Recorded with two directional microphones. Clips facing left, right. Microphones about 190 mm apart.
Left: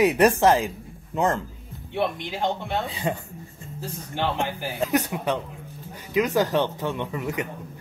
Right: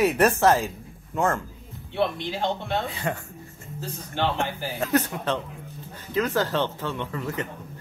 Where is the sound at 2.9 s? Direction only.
15° left (ahead or behind).